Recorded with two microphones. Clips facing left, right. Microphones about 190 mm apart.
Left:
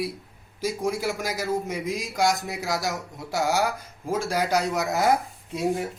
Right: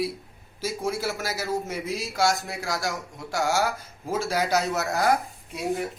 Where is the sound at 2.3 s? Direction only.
Centre (ahead or behind).